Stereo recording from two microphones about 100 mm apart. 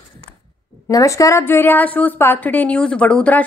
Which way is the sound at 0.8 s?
35° left (ahead or behind).